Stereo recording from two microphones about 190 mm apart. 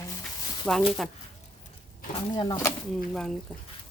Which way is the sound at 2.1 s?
25° left (ahead or behind).